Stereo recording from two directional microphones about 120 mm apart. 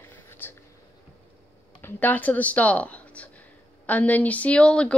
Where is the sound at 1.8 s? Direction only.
15° left (ahead or behind).